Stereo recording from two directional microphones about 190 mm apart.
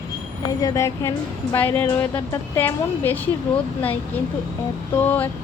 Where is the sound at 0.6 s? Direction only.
15° left (ahead or behind).